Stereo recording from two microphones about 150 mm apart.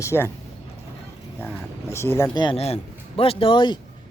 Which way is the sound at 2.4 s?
35° left (ahead or behind).